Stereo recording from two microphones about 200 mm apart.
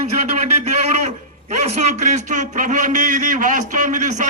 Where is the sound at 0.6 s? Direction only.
35° right (ahead or behind).